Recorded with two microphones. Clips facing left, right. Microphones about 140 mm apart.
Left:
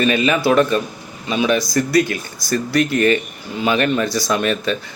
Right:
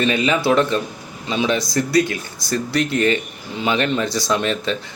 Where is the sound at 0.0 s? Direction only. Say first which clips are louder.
Left 2 dB; 20° right (ahead or behind).